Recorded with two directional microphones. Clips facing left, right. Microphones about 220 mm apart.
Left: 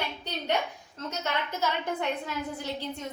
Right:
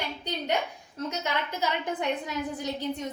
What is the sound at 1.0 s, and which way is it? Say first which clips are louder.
A woman's voice: right 1 dB; 15° right (ahead or behind).